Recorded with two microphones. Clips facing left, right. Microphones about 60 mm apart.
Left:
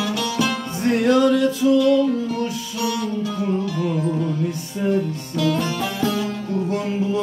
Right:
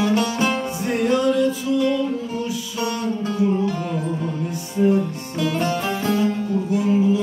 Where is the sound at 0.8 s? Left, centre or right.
Left.